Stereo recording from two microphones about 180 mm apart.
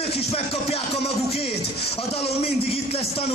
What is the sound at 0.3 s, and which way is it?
Music, 35° left (ahead or behind).